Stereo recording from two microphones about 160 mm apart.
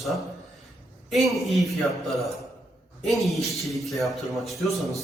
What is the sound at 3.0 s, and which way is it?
Speech, centre (ahead or behind).